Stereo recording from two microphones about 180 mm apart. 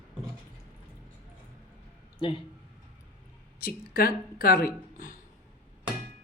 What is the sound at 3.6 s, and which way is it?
Speech, 55° left (ahead or behind).